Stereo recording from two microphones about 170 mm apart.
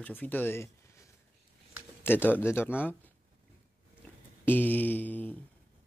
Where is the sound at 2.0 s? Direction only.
10° left (ahead or behind).